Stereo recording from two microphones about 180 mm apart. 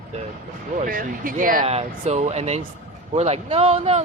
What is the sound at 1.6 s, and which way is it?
Speech, 35° right (ahead or behind).